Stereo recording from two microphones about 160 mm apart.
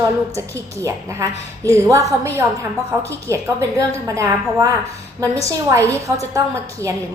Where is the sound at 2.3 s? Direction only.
20° right (ahead or behind).